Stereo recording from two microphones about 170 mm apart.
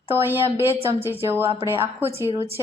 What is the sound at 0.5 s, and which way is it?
A woman's voice, 15° right (ahead or behind).